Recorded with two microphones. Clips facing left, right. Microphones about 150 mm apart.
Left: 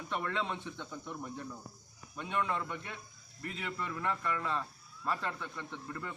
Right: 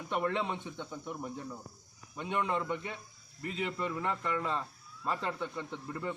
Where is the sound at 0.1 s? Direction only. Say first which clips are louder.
Right 4 dB; 20° right (ahead or behind).